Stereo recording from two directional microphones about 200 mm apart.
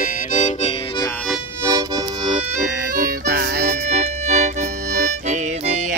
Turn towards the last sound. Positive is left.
turn(degrees=-35)  # may be behind; listen again after turning